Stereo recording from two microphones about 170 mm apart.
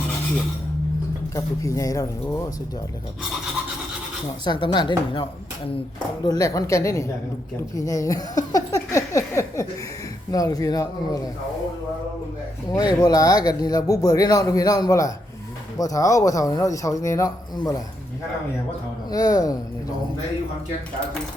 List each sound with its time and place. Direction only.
1.4 s speech: 20° left (ahead or behind)
4.4 s speech: 25° left (ahead or behind)
7.8 s a sound: 20° left (ahead or behind)
10.3 s speech: 20° left (ahead or behind)
12.7 s speech: 20° left (ahead or behind)
19.1 s speech: 20° left (ahead or behind)